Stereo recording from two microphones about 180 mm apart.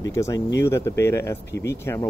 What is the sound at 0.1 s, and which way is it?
Speech, 15° left (ahead or behind).